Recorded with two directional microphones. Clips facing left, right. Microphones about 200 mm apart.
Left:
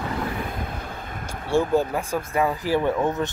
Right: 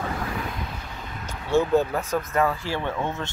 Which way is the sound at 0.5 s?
50° left (ahead or behind).